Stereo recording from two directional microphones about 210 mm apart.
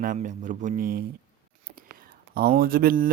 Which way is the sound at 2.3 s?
45° right (ahead or behind).